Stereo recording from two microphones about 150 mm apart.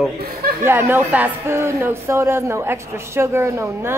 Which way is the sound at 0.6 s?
15° right (ahead or behind).